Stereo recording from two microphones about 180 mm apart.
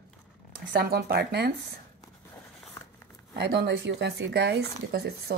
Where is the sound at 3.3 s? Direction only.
65° right (ahead or behind).